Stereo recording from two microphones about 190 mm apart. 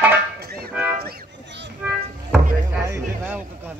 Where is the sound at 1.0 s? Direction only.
65° right (ahead or behind).